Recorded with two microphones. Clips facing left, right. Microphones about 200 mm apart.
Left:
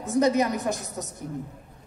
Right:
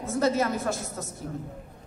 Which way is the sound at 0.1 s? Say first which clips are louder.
Left 3 dB; 15° left (ahead or behind).